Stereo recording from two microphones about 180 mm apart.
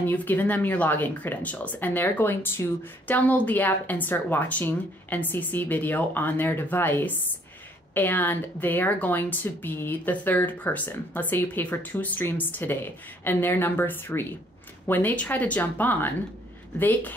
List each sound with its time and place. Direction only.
0.0 s speech: 10° left (ahead or behind)